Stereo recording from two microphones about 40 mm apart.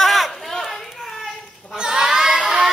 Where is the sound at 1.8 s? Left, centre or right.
Centre.